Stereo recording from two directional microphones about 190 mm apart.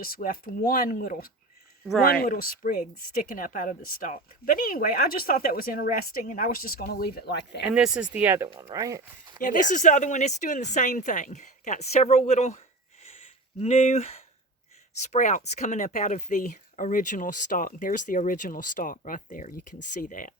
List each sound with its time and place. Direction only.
0.0 s speech: 50° left (ahead or behind)
7.7 s speech: 5° right (ahead or behind)
9.4 s speech: 45° left (ahead or behind)